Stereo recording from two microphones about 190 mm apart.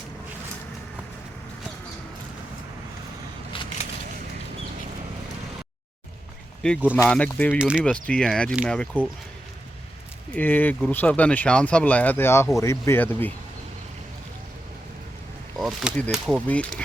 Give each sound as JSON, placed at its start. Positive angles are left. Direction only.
{"t": 3.5, "sound": "a sound", "side_deg": 25}
{"t": 6.9, "sound": "speech", "side_deg": 10}
{"t": 7.6, "sound": "speech", "side_deg": -5}
{"t": 7.9, "sound": "speech", "side_deg": 5}
{"t": 10.3, "sound": "speech", "side_deg": 10}
{"t": 15.5, "sound": "speech", "side_deg": 0}